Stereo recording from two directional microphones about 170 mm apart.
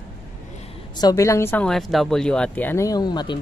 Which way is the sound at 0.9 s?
20° left (ahead or behind).